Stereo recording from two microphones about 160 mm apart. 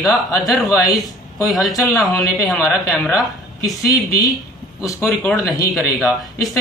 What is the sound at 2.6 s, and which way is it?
Speech, 15° left (ahead or behind).